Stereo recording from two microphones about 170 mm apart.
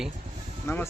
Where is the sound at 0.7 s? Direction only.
15° left (ahead or behind).